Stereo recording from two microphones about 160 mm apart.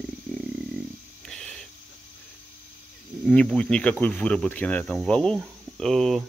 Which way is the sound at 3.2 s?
5° left (ahead or behind).